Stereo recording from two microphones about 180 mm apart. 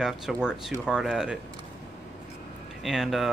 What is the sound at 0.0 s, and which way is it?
Speech, 5° right (ahead or behind).